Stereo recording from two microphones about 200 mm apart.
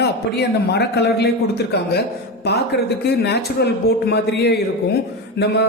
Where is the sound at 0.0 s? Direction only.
55° left (ahead or behind).